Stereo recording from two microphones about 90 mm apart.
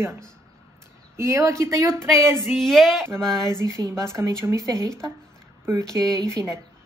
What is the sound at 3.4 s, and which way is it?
A woman's voice, 35° right (ahead or behind).